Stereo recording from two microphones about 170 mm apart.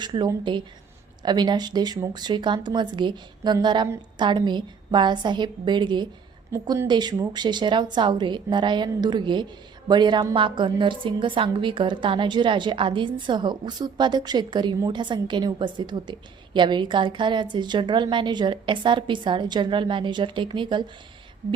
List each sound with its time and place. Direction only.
0.0 s a woman's voice: 25° right (ahead or behind)